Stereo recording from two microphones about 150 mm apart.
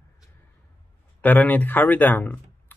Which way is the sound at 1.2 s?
10° left (ahead or behind).